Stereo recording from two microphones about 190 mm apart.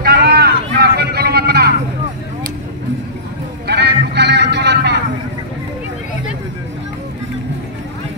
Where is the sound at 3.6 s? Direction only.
60° right (ahead or behind).